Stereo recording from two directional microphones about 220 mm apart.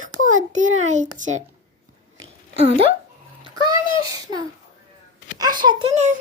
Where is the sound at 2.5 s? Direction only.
30° right (ahead or behind).